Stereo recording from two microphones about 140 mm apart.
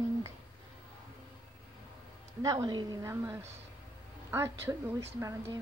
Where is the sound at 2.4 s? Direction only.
25° right (ahead or behind).